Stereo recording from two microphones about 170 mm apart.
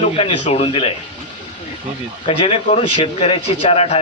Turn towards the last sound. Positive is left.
turn(degrees=35)  # may be behind; listen again after turning